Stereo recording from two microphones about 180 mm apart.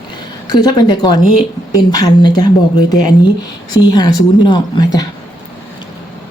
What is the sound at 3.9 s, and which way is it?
Speech, 20° left (ahead or behind).